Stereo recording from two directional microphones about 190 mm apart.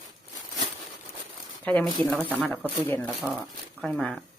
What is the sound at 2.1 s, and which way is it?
Speech, 5° right (ahead or behind).